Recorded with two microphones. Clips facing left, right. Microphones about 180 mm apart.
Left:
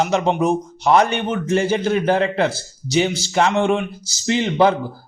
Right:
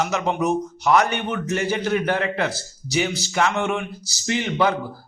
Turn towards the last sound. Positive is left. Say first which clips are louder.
# left 5 dB
turn(degrees=30)  # may be behind; listen again after turning